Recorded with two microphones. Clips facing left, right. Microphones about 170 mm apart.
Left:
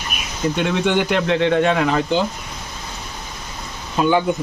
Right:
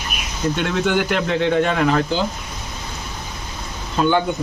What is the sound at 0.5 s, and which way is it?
Speech, centre (ahead or behind).